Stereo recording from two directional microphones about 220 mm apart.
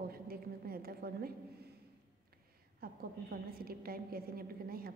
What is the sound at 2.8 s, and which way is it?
A woman's voice, 45° right (ahead or behind).